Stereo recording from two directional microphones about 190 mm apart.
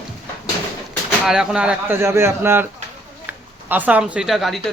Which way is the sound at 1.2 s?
5° right (ahead or behind).